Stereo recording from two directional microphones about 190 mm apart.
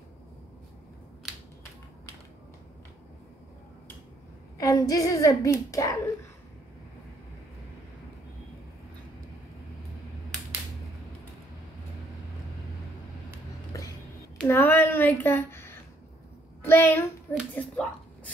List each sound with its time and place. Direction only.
1.2 s crushing: centre (ahead or behind)
4.6 s a woman's voice: 20° left (ahead or behind)
14.5 s a sound: 10° left (ahead or behind)
16.6 s a woman's voice: 10° left (ahead or behind)
17.3 s speech: centre (ahead or behind)